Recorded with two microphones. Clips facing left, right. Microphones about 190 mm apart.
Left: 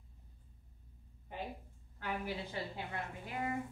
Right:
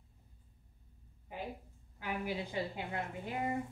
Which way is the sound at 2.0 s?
15° right (ahead or behind).